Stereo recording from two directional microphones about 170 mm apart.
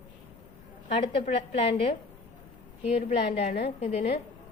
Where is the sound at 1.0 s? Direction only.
35° left (ahead or behind).